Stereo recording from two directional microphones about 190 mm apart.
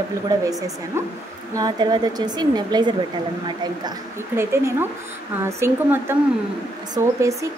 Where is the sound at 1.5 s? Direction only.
20° right (ahead or behind).